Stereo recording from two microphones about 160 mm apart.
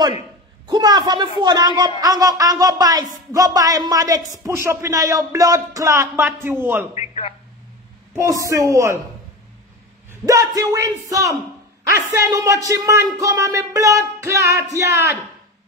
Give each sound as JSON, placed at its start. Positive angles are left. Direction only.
{"t": 0.7, "sound": "speech", "side_deg": -25}
{"t": 7.0, "sound": "a sound", "side_deg": 40}
{"t": 8.1, "sound": "speech", "side_deg": -20}
{"t": 10.2, "sound": "speech", "side_deg": -20}